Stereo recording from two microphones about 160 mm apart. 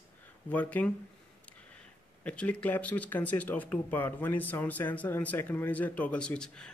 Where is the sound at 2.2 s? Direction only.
10° left (ahead or behind).